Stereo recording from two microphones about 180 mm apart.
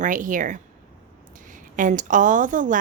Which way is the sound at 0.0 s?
45° right (ahead or behind).